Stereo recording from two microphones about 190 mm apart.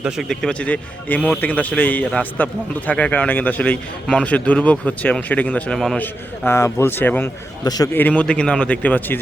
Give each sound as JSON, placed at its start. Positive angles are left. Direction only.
{"t": 0.0, "sound": "speech", "side_deg": 0}
{"t": 7.6, "sound": "a man's voice", "side_deg": 20}
{"t": 7.9, "sound": "speech", "side_deg": 10}